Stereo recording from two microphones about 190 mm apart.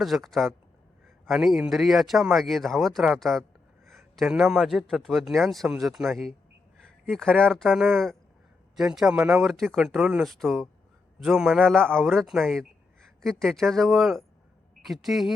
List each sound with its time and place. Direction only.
0.0 s speech: centre (ahead or behind)